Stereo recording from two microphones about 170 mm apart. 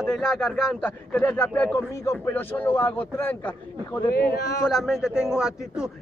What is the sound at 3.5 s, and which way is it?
Speech, 20° left (ahead or behind).